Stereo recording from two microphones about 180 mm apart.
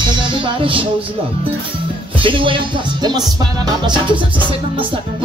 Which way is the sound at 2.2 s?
30° right (ahead or behind).